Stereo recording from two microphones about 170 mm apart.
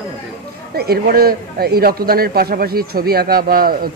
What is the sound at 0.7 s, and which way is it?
A man's voice, 65° right (ahead or behind).